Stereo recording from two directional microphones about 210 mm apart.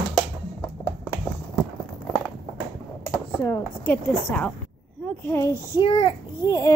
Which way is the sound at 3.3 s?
10° left (ahead or behind).